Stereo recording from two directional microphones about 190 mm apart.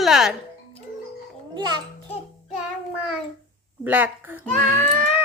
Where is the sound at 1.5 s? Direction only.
25° right (ahead or behind).